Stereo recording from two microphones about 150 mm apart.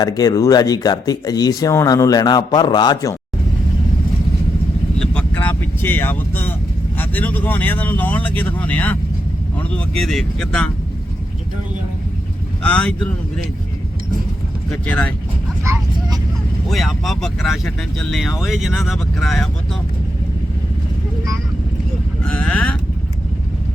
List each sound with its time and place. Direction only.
0.0 s speech: 25° left (ahead or behind)
4.9 s vehicle: 10° left (ahead or behind)
6.9 s speech: 10° left (ahead or behind)
12.6 s speech: 5° left (ahead or behind)
14.7 s speech: 10° left (ahead or behind)
15.6 s speech: 20° right (ahead or behind)
16.6 s speech: centre (ahead or behind)
22.2 s speech: 10° left (ahead or behind)